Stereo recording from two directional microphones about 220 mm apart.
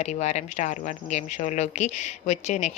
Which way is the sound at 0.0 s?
30° left (ahead or behind).